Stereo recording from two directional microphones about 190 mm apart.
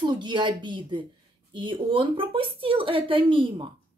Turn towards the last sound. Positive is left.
turn(degrees=-25)  # may be behind; listen again after turning